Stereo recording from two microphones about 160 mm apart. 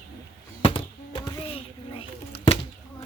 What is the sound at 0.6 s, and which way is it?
Music, 30° left (ahead or behind).